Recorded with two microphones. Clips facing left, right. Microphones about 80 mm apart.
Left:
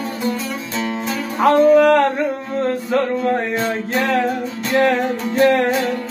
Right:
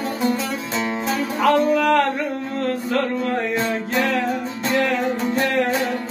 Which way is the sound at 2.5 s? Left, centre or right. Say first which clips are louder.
Left 3 dB; left.